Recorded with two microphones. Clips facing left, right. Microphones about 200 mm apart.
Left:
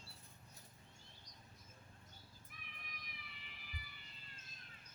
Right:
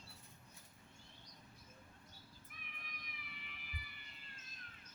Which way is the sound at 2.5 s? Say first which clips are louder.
Right 1 dB; 55° right (ahead or behind).